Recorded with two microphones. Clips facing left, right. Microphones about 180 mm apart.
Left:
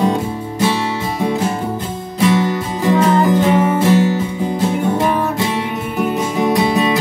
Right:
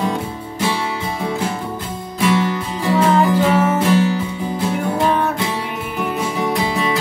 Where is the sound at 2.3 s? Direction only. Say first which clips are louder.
Left 2 dB; 20° left (ahead or behind).